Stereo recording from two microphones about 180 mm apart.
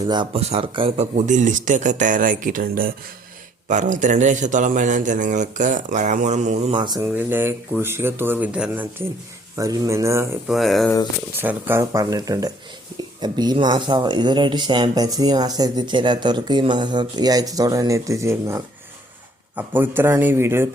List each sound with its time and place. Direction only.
0.0 s speech: 25° right (ahead or behind)
1.3 s a man's voice: 45° right (ahead or behind)
6.7 s speech: 25° right (ahead or behind)
7.0 s speech: 10° right (ahead or behind)
10.5 s speech: centre (ahead or behind)
11.3 s speech: 10° right (ahead or behind)